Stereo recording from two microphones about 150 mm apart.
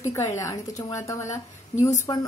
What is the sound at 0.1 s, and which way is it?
Speech, 20° left (ahead or behind).